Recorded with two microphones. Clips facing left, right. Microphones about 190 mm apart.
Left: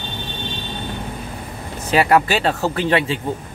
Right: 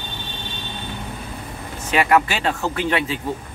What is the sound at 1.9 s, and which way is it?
Speech, 35° left (ahead or behind).